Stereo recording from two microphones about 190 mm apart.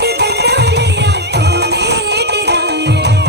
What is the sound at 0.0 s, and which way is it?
Music, 60° right (ahead or behind).